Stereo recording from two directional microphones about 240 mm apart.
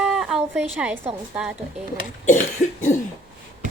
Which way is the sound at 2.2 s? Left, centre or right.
Left.